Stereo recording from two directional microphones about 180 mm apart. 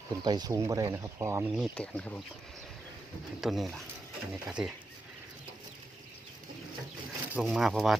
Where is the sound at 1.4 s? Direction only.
Centre (ahead or behind).